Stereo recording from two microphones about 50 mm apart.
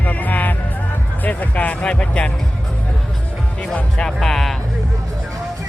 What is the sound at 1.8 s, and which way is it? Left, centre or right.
Music, left.